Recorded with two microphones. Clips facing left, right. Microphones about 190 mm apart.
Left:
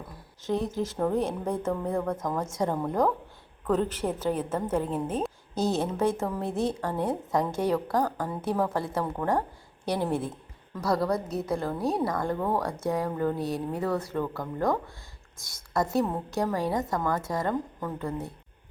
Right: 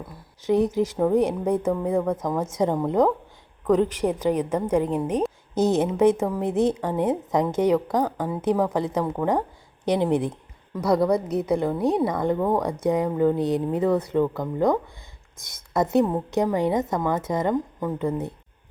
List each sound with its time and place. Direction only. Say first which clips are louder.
0.4 s a woman's voice: right 8 dB; 20° right (ahead or behind)